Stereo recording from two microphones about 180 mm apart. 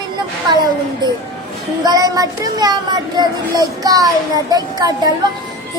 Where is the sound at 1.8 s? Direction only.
20° right (ahead or behind).